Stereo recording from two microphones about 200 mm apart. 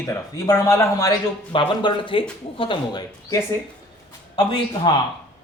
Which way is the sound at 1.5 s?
25° left (ahead or behind).